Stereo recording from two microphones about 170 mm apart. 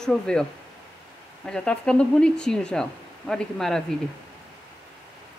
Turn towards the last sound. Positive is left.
turn(degrees=0)  # may be behind; listen again after turning